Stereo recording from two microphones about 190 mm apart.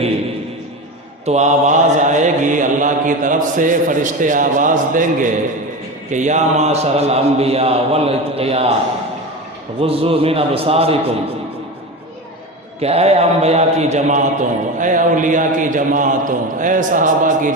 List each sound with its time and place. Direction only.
1.2 s mantra: 35° right (ahead or behind)
6.1 s a man's voice: 40° right (ahead or behind)
9.8 s a man's voice: 30° right (ahead or behind)
12.8 s a man's voice: 35° right (ahead or behind)
14.8 s mantra: 45° right (ahead or behind)